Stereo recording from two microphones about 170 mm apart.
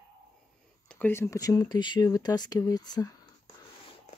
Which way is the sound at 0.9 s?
10° left (ahead or behind).